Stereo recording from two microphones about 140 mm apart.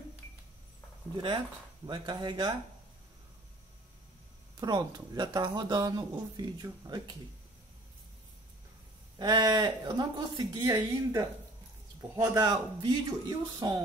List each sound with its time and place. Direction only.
1.1 s a man's voice: 40° right (ahead or behind)
4.6 s speech: 30° right (ahead or behind)
9.2 s a man's voice: 30° right (ahead or behind)